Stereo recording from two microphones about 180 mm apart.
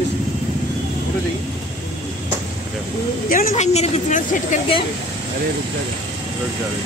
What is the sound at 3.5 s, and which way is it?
A woman's voice, 35° left (ahead or behind).